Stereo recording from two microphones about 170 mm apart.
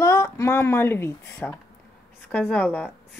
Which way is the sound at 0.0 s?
15° left (ahead or behind).